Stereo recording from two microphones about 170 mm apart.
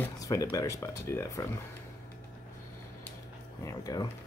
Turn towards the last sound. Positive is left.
turn(degrees=20)  # may be behind; listen again after turning